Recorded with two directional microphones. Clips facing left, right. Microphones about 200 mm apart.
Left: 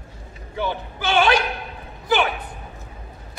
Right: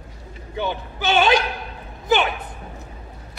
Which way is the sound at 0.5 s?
20° right (ahead or behind).